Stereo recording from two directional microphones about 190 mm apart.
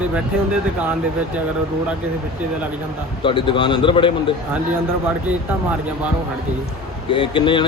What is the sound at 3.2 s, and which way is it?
Speech, 25° left (ahead or behind).